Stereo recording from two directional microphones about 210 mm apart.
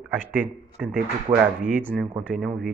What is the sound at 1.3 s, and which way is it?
Speech, 25° right (ahead or behind).